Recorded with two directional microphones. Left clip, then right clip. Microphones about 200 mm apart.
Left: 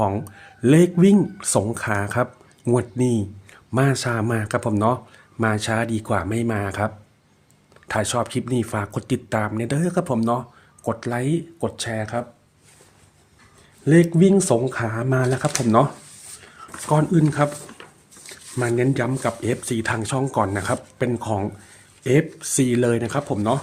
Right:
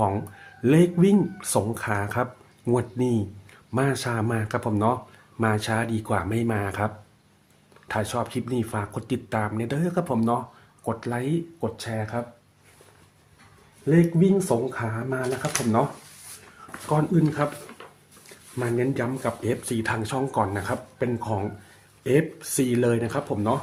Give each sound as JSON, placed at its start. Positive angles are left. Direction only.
{"t": 0.0, "sound": "speech", "side_deg": 30}
{"t": 13.8, "sound": "speech", "side_deg": 50}
{"t": 16.9, "sound": "speech", "side_deg": 40}